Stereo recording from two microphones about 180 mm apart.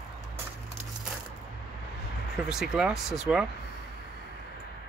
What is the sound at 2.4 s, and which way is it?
Speech, 5° right (ahead or behind).